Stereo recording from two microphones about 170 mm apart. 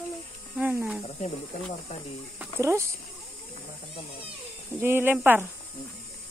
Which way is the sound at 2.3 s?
15° right (ahead or behind).